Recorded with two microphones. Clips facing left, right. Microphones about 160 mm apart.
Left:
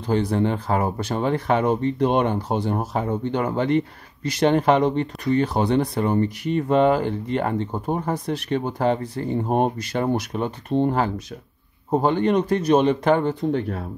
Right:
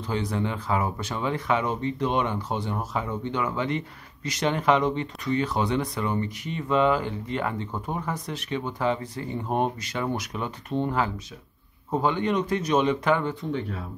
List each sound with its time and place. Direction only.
0.0 s speech: 35° left (ahead or behind); by 2.3 s 50° left (ahead or behind)
2.3 s speech: 35° left (ahead or behind)
4.2 s speech: 30° left (ahead or behind)
6.4 s speech: 50° left (ahead or behind)
9.0 s speech: 35° left (ahead or behind)
13.5 s speech: 50° left (ahead or behind)